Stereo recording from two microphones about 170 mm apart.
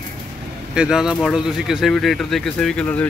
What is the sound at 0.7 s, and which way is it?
Speech, 5° right (ahead or behind).